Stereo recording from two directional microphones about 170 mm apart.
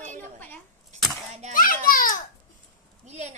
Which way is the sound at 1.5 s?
55° left (ahead or behind).